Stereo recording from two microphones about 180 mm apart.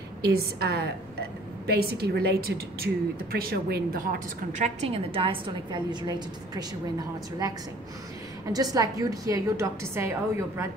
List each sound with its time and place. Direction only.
0.2 s a woman's voice: 60° right (ahead or behind); by 6.6 s 25° right (ahead or behind)
8.5 s a woman's voice: 20° right (ahead or behind)